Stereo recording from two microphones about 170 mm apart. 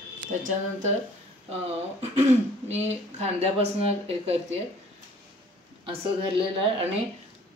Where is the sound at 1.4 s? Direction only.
40° right (ahead or behind).